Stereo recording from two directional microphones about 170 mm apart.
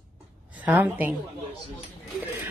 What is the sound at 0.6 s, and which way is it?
Speech, 10° right (ahead or behind).